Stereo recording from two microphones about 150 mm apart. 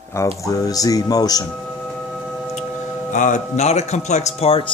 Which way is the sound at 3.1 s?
55° left (ahead or behind).